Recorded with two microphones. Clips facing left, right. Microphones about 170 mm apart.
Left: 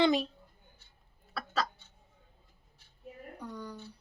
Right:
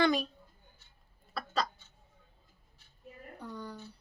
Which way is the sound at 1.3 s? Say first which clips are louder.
Even; 5° left (ahead or behind).